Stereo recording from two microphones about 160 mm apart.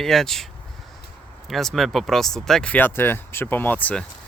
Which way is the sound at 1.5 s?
Centre (ahead or behind).